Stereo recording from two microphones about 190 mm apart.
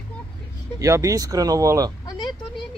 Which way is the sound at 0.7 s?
15° right (ahead or behind).